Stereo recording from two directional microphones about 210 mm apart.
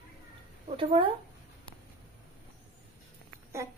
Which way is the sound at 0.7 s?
25° right (ahead or behind).